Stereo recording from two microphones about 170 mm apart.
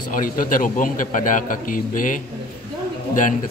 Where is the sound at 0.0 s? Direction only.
50° left (ahead or behind).